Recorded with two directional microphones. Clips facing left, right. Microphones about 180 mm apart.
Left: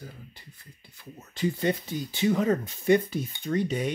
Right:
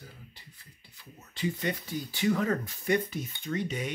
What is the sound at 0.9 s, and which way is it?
Speech, 45° left (ahead or behind).